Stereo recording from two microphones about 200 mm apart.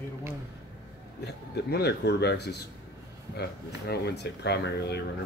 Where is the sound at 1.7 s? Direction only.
55° left (ahead or behind).